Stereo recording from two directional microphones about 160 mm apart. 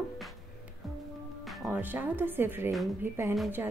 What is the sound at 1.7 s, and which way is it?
Speech, 10° right (ahead or behind).